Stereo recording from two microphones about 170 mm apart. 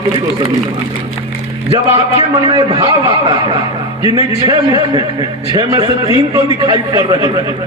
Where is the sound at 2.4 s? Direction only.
25° right (ahead or behind).